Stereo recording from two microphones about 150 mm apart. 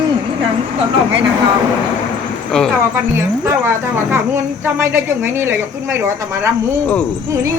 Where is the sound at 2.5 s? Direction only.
5° left (ahead or behind).